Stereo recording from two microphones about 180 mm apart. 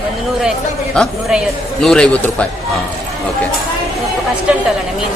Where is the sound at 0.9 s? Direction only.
Centre (ahead or behind).